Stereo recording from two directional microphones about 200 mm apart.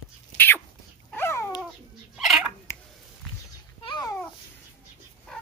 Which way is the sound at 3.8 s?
20° left (ahead or behind).